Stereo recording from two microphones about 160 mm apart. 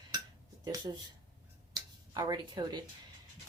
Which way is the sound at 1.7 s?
25° right (ahead or behind).